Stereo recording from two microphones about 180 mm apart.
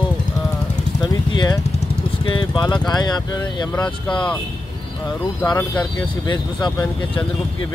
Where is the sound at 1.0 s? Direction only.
20° left (ahead or behind).